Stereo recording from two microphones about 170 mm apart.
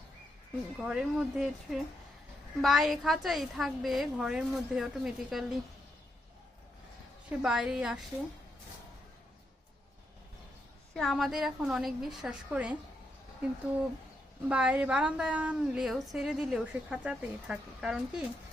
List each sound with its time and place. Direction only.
0.8 s a woman's voice: 5° right (ahead or behind)
7.3 s a woman's voice: 5° right (ahead or behind)
10.9 s a woman's voice: centre (ahead or behind)
14.4 s a woman's voice: 10° right (ahead or behind)